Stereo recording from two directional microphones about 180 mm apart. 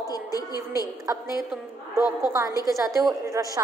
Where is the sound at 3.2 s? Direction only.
15° right (ahead or behind).